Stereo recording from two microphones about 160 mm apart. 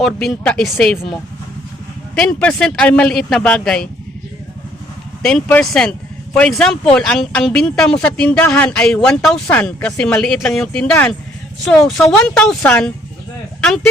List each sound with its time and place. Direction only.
0.0 s speech: centre (ahead or behind)
2.1 s speech: 5° left (ahead or behind)
5.2 s speech: 10° left (ahead or behind)